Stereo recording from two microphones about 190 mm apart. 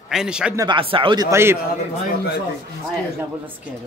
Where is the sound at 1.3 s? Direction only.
15° right (ahead or behind).